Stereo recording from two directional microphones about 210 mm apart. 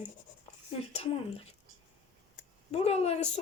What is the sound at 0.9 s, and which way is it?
Speech, 30° left (ahead or behind).